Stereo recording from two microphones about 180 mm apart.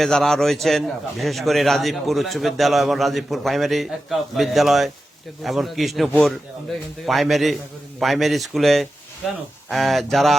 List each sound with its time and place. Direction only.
0.0 s a man's voice: centre (ahead or behind)